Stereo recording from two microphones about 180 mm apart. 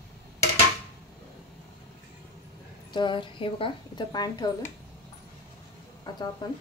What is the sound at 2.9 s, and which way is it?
A woman's voice, 25° left (ahead or behind).